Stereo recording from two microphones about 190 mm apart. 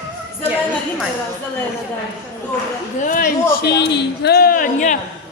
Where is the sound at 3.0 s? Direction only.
45° left (ahead or behind).